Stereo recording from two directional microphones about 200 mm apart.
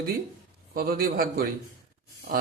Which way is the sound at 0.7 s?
50° right (ahead or behind).